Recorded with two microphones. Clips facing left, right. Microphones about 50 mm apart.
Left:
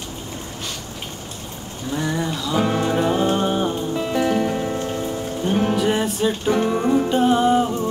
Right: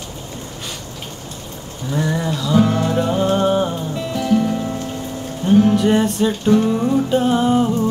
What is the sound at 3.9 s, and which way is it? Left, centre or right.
Music, left.